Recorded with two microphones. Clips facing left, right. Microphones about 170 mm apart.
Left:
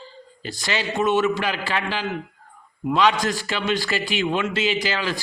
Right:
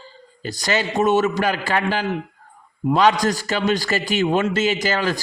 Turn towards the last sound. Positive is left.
turn(degrees=-45)  # may be behind; listen again after turning